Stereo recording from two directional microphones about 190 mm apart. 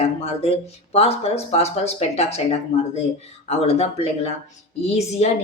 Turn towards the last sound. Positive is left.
turn(degrees=35)  # may be behind; listen again after turning